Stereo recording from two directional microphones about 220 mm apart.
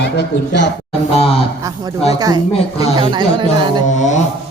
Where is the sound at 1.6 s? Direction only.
15° right (ahead or behind).